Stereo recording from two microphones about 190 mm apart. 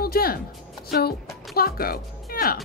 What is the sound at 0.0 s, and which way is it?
Music, 50° left (ahead or behind).